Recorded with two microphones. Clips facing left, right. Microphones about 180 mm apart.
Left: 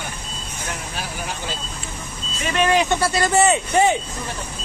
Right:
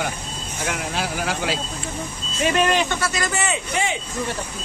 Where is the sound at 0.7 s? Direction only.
90° right.